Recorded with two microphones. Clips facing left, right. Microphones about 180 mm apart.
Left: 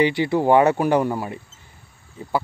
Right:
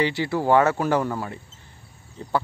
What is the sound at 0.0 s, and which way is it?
Speech, 15° left (ahead or behind).